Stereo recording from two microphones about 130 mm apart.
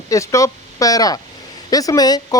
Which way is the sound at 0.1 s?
25° left (ahead or behind).